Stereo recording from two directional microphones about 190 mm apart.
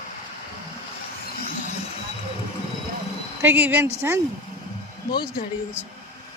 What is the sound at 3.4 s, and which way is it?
Speech, 10° right (ahead or behind).